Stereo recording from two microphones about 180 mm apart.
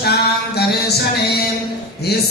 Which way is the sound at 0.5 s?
65° left (ahead or behind).